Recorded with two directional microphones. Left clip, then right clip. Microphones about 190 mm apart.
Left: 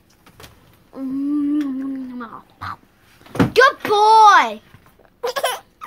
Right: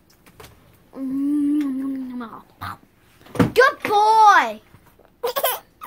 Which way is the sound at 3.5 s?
5° left (ahead or behind).